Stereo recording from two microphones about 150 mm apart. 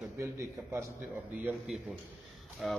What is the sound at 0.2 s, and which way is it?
Speech, 20° right (ahead or behind).